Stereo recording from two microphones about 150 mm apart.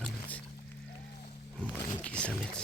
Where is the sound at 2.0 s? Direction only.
5° left (ahead or behind).